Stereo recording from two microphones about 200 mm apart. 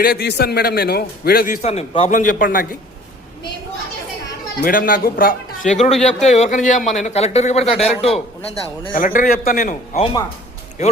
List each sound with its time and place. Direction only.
0.0 s a man's voice: 50° left (ahead or behind)
1.6 s speech: 30° left (ahead or behind)
2.1 s a man's voice: 45° left (ahead or behind)
4.6 s a man's voice: 45° left (ahead or behind); by 9.0 s 30° left (ahead or behind)
9.0 s a man's voice: 40° left (ahead or behind)